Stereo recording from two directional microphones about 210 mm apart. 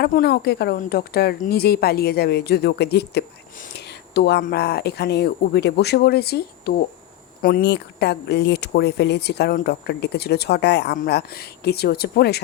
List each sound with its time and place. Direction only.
0.0 s speech: 50° left (ahead or behind)